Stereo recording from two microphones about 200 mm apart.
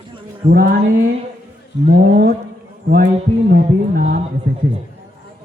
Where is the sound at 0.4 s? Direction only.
45° right (ahead or behind).